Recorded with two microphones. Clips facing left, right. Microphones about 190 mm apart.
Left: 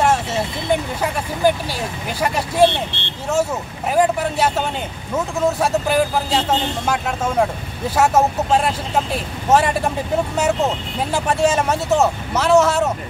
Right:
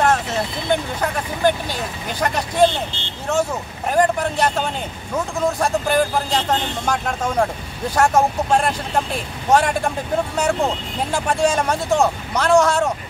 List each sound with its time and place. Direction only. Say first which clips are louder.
0.7 s speech: left 1 dB; 5° left (ahead or behind)
2.6 s speech: left 1 dB; 65° left (ahead or behind)
3.9 s speech: left 1 dB; 5° left (ahead or behind)